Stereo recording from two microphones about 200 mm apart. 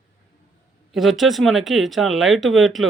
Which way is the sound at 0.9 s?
Centre (ahead or behind).